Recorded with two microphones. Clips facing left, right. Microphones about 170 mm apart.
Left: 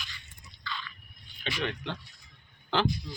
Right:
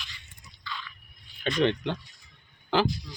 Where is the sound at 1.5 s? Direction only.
45° right (ahead or behind).